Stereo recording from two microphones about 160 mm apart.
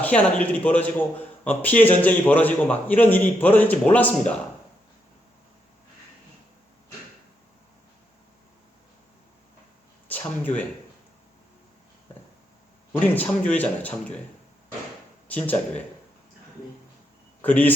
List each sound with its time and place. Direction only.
0.0 s a man's voice: 10° left (ahead or behind)
10.1 s speech: 10° left (ahead or behind)
12.9 s a man's voice: 10° left (ahead or behind)
15.3 s a man's voice: 10° left (ahead or behind)
17.4 s a man's voice: 10° left (ahead or behind)